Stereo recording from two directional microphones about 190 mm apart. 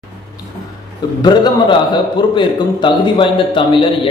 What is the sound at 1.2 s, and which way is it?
A man's voice, 20° left (ahead or behind).